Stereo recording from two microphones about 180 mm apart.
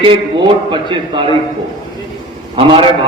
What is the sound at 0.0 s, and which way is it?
A man's voice, 25° right (ahead or behind).